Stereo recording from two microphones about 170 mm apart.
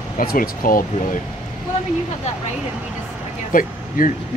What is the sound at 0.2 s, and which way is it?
Speech, 55° left (ahead or behind).